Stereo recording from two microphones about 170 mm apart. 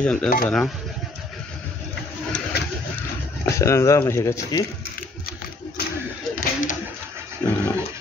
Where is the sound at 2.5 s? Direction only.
70° left (ahead or behind).